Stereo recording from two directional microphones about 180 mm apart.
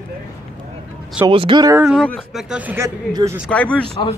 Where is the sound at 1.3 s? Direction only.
25° right (ahead or behind).